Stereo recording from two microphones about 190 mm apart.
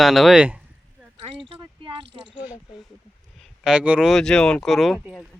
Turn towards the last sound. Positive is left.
turn(degrees=0)  # may be behind; listen again after turning